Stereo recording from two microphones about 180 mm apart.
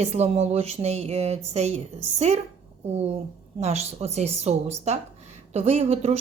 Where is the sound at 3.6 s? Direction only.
35° right (ahead or behind).